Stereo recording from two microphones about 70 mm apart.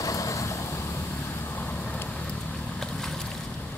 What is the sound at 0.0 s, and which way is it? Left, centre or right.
Vehicle, left.